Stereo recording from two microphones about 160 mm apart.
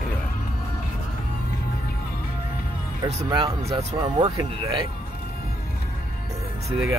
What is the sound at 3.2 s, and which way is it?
Speech, 30° right (ahead or behind).